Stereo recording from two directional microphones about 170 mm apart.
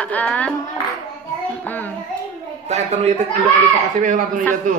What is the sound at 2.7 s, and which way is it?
Speech, 40° right (ahead or behind).